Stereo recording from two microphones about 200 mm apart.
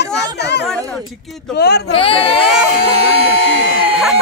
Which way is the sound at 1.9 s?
30° left (ahead or behind).